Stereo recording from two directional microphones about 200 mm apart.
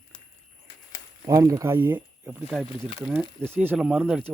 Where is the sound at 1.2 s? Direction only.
15° right (ahead or behind).